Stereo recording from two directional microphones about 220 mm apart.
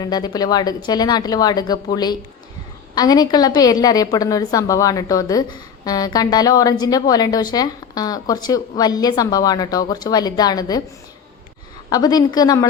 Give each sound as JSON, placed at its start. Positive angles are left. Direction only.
{"t": 0.0, "sound": "a woman's voice", "side_deg": 15}
{"t": 11.9, "sound": "a woman's voice", "side_deg": 15}